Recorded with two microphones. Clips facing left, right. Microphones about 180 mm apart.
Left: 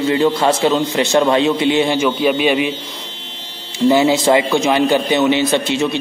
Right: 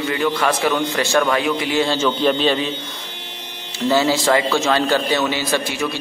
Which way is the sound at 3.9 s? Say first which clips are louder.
Left 4 dB; 20° left (ahead or behind).